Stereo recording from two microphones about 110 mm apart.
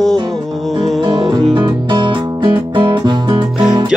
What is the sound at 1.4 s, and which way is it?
Music, 45° right (ahead or behind).